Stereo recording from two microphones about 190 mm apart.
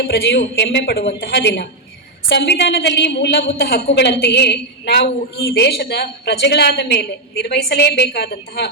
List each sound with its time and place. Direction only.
0.0 s a woman's voice: 70° left (ahead or behind)